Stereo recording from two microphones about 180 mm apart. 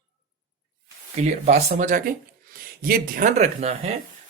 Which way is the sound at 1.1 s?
40° right (ahead or behind).